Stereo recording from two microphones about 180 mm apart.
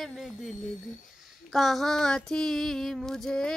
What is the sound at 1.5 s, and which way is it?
Child singing, centre (ahead or behind).